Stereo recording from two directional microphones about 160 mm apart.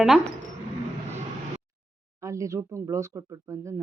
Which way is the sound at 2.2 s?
20° right (ahead or behind).